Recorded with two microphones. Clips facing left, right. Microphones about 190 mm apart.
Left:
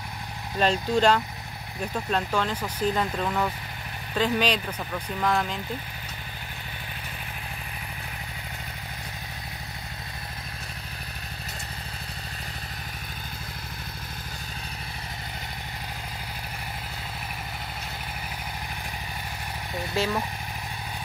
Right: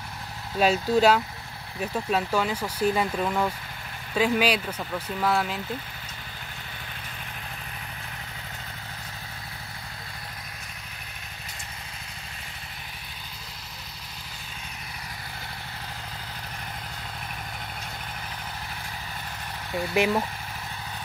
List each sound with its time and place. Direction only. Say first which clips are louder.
0.6 s speech: right 2 dB; 10° right (ahead or behind)
19.9 s speech: right 4 dB; 15° right (ahead or behind)